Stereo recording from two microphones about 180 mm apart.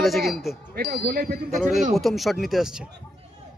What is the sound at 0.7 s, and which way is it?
Speech, 55° right (ahead or behind).